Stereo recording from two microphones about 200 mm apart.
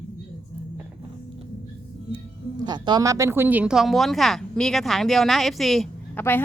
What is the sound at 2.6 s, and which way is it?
Speech, 20° right (ahead or behind).